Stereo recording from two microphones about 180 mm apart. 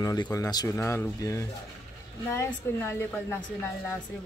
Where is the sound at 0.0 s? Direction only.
20° left (ahead or behind).